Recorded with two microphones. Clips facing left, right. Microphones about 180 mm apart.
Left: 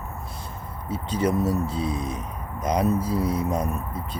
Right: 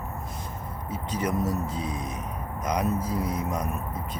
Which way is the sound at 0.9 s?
30° left (ahead or behind).